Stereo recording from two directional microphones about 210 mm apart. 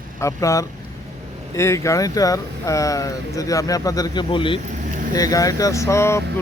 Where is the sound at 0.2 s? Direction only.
15° left (ahead or behind).